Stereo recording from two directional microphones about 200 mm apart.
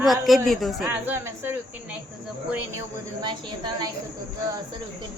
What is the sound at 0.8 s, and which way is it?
Speech, 10° right (ahead or behind).